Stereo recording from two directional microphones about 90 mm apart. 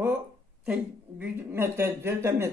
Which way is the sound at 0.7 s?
20° right (ahead or behind).